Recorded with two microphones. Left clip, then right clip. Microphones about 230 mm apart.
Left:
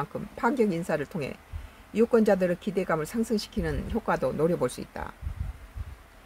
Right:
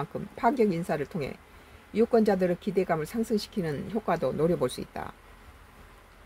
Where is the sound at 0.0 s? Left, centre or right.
Centre.